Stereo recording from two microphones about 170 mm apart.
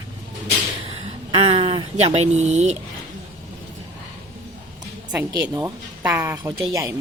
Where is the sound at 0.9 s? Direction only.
35° right (ahead or behind).